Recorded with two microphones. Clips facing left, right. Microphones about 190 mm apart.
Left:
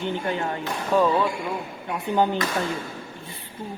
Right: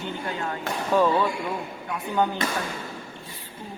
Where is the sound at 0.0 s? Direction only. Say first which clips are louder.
Left 4 dB; 20° left (ahead or behind).